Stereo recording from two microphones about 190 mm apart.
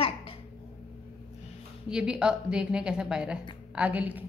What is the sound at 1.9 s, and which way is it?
A woman's voice, 5° right (ahead or behind).